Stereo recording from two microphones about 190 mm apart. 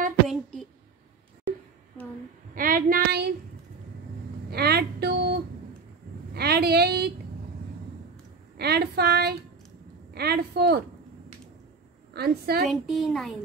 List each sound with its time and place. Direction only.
0.3 s a sound: centre (ahead or behind)
2.5 s a woman's voice: 45° right (ahead or behind)
4.5 s speech: 55° right (ahead or behind)
8.5 s speech: 55° right (ahead or behind)
12.1 s speech: 55° right (ahead or behind)
12.6 s speech: centre (ahead or behind)